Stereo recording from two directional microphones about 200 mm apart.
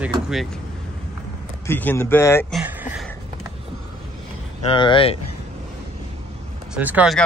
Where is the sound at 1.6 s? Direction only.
10° left (ahead or behind).